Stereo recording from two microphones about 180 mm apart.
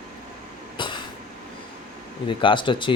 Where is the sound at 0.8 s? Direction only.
25° left (ahead or behind).